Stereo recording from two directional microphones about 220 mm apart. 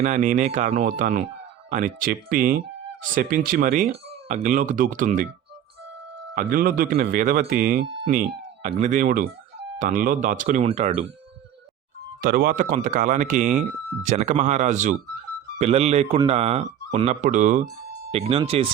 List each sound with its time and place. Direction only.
0.0 s speech: 35° right (ahead or behind)
6.3 s speech: 40° right (ahead or behind)
12.2 s speech: 40° right (ahead or behind); by 18.7 s 25° right (ahead or behind)